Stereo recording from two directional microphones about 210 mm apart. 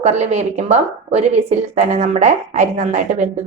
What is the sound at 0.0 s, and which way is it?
A woman's voice, 30° right (ahead or behind).